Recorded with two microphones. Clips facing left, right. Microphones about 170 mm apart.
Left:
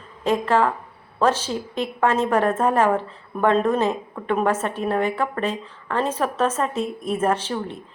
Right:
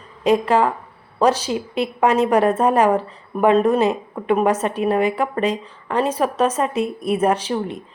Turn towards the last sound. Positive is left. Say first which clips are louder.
# right 4 dB
turn(degrees=-15)  # may be behind; listen again after turning